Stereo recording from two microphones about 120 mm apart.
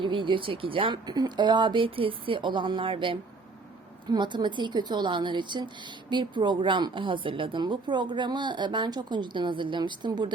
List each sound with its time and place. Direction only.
0.0 s a woman's voice: 45° right (ahead or behind)